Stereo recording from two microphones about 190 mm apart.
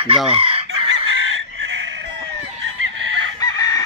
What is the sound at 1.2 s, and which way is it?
Chicken, 90° right.